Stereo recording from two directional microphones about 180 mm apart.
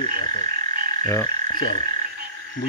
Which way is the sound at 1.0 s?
20° left (ahead or behind).